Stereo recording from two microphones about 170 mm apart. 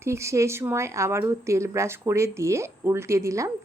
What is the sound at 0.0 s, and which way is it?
Speech, 15° right (ahead or behind).